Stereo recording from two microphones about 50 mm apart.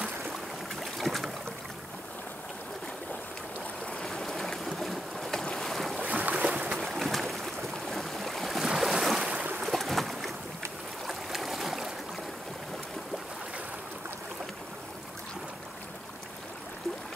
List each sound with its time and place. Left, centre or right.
0.7 s boat: centre
4.0 s boat: centre
6.0 s boat: right
6.9 s boat: centre
8.6 s boat: centre
9.2 s boat: right
9.6 s boat: centre